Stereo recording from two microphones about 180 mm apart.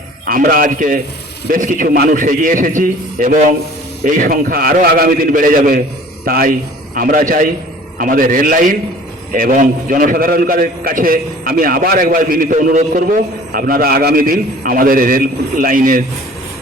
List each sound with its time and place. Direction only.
0.3 s a man's voice: 50° right (ahead or behind)